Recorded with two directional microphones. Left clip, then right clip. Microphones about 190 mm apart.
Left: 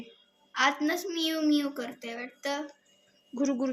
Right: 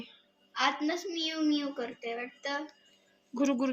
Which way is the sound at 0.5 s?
55° left (ahead or behind).